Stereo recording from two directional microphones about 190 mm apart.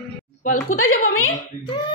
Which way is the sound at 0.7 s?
90° left.